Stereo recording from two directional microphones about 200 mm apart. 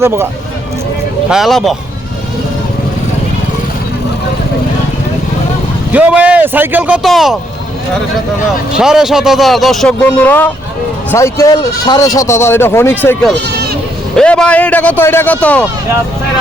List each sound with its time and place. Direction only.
0.0 s speech: 10° right (ahead or behind)
1.3 s speech: centre (ahead or behind)
5.9 s speech: 5° right (ahead or behind)
8.8 s speech: centre (ahead or behind)
13.3 s speech: 55° right (ahead or behind)
14.2 s speech: 5° left (ahead or behind)